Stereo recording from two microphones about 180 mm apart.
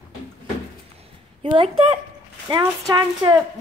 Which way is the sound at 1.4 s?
30° right (ahead or behind).